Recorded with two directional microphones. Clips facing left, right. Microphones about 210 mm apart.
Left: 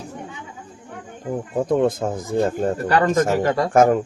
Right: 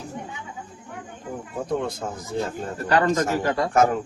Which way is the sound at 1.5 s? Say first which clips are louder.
Left 8 dB; 50° left (ahead or behind).